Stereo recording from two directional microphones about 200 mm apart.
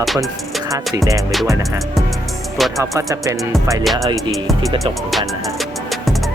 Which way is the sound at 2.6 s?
Centre (ahead or behind).